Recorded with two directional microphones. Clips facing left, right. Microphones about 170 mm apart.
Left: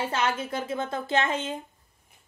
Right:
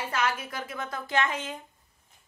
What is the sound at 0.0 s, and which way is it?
A woman's voice, 25° left (ahead or behind).